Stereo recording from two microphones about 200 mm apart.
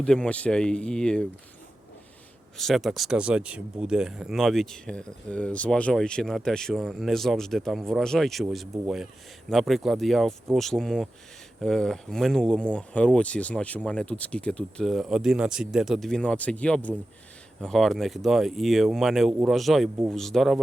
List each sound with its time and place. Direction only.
0.0 s speech: 5° left (ahead or behind)
2.6 s speech: centre (ahead or behind)